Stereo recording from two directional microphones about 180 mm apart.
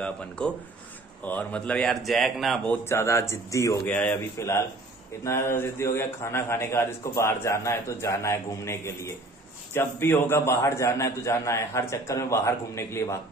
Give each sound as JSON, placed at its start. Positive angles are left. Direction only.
{"t": 0.4, "sound": "speech", "side_deg": 5}
{"t": 2.8, "sound": "a man's voice", "side_deg": 15}
{"t": 3.9, "sound": "a man's voice", "side_deg": 5}